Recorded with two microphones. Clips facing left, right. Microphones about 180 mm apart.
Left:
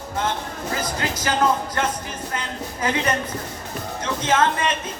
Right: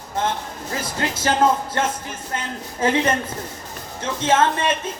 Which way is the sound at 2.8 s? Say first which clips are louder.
Right 4 dB; 25° right (ahead or behind).